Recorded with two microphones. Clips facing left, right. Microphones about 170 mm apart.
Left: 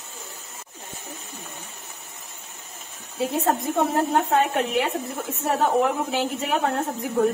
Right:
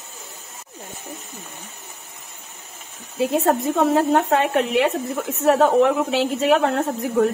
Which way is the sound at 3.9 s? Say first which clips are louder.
Right 2 dB; 90° right.